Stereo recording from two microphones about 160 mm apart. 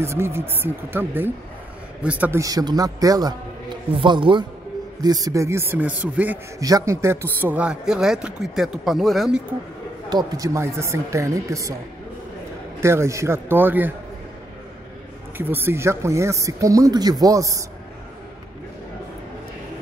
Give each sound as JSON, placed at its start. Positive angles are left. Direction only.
{"t": 0.0, "sound": "speech", "side_deg": -15}
{"t": 2.4, "sound": "a man's voice", "side_deg": -25}
{"t": 6.6, "sound": "a man's voice", "side_deg": -20}
{"t": 10.0, "sound": "speech", "side_deg": -25}
{"t": 12.8, "sound": "speech", "side_deg": -15}
{"t": 15.3, "sound": "speech", "side_deg": -15}